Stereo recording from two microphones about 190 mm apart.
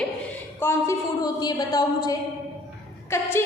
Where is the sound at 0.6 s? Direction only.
15° left (ahead or behind).